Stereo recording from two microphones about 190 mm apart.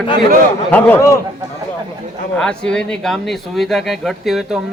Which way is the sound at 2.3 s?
5° left (ahead or behind).